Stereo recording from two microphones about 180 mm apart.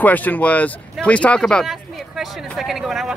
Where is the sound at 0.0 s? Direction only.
10° left (ahead or behind).